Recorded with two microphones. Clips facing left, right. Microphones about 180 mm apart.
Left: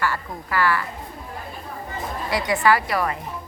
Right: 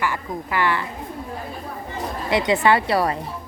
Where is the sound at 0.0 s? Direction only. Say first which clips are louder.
Right 1 dB; 20° right (ahead or behind).